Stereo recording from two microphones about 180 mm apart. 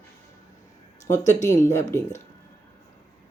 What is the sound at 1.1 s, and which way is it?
Speech, 15° left (ahead or behind).